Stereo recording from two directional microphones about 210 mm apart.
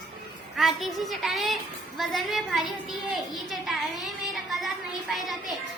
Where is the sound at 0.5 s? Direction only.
Centre (ahead or behind).